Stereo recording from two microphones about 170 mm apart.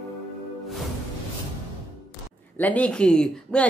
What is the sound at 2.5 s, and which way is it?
Speech, 10° left (ahead or behind).